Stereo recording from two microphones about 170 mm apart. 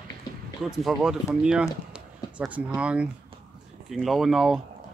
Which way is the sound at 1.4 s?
5° right (ahead or behind).